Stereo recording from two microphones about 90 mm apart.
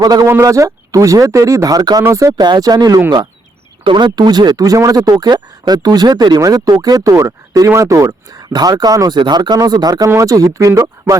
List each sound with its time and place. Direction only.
0.0 s speech: 45° right (ahead or behind)
0.3 s speech: 30° right (ahead or behind)
2.4 s speech: 50° right (ahead or behind)
3.8 s speech: 60° right (ahead or behind)
10.1 s speech: 35° right (ahead or behind)